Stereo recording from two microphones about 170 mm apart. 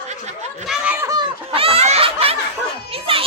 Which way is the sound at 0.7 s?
5° right (ahead or behind).